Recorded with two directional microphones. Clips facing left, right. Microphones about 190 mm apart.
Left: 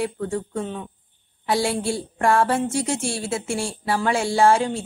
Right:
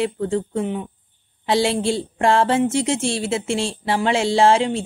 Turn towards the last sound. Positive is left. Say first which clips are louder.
# right 2 dB
turn(degrees=-20)  # may be behind; listen again after turning